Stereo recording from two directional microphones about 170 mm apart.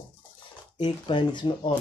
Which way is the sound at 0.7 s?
30° left (ahead or behind).